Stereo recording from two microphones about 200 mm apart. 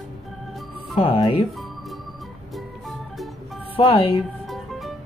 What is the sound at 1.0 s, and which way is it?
Speech, 25° left (ahead or behind).